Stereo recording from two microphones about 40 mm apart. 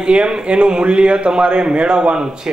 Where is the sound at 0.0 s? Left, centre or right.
Right.